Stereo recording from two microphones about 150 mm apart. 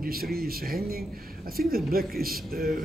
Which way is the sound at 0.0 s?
90° right.